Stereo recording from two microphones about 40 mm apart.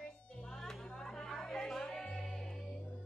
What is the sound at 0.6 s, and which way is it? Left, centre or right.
Music, centre.